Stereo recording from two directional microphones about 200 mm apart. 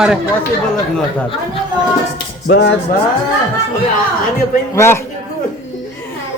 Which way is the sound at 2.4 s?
55° left (ahead or behind).